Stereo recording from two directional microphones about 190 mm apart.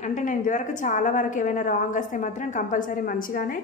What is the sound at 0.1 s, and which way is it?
A woman's voice, 40° left (ahead or behind).